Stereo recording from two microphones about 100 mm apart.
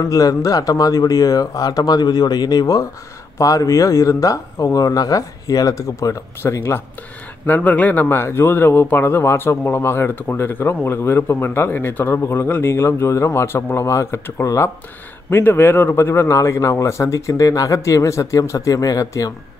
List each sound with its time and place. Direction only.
0.0 s speech: 35° left (ahead or behind)